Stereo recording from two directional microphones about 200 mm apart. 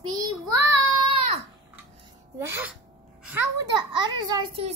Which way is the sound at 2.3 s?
10° right (ahead or behind).